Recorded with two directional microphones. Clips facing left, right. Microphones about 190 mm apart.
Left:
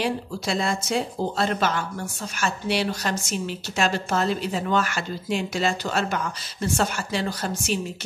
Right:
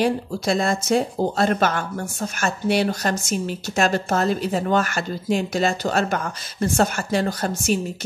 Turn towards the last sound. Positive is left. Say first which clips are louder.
# right 4 dB
turn(degrees=-45)  # may be behind; listen again after turning